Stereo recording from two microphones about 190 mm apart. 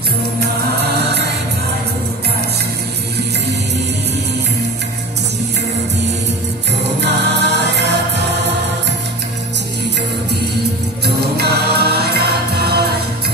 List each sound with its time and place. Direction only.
0.4 s music: 60° right (ahead or behind)
7.0 s music: 65° right (ahead or behind)
11.1 s music: 60° right (ahead or behind)